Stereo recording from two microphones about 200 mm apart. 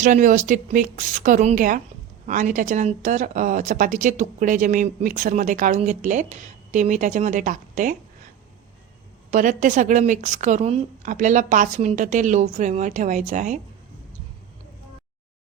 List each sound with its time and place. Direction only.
0.0 s a woman's voice: 40° right (ahead or behind)
9.3 s a woman's voice: 40° right (ahead or behind)